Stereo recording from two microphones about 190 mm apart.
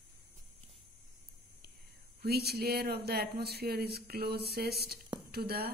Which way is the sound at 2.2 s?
55° right (ahead or behind).